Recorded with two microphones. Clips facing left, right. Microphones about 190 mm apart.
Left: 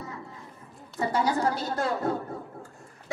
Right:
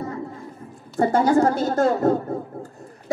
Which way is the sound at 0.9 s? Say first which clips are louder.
Right 9 dB; 50° right (ahead or behind).